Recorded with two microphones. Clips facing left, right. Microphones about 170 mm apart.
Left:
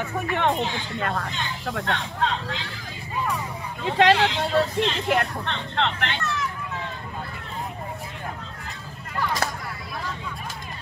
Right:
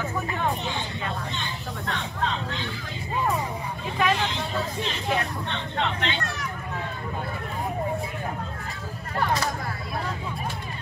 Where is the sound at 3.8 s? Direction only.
80° left.